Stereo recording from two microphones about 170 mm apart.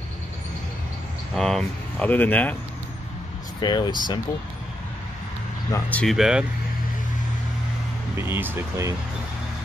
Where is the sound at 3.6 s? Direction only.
25° left (ahead or behind).